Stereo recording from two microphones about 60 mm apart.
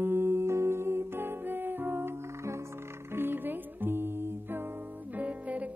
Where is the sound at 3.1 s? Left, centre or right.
Right.